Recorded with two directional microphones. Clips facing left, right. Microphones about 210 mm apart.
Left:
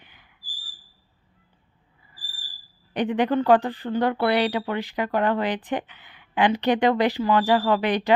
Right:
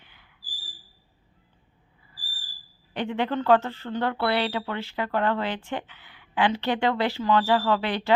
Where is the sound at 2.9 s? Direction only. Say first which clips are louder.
Left 5 dB; 15° left (ahead or behind).